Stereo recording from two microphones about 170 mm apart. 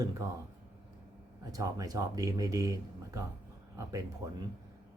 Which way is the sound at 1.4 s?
20° right (ahead or behind).